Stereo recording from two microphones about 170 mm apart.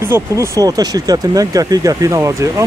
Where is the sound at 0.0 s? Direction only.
15° right (ahead or behind).